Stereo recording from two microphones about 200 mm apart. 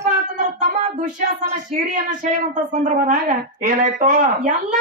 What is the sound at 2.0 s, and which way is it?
Speech, 40° right (ahead or behind).